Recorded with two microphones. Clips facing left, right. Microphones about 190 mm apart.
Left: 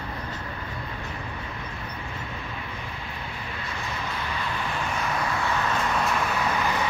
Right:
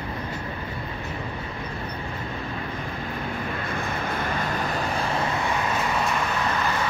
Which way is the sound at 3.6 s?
55° right (ahead or behind).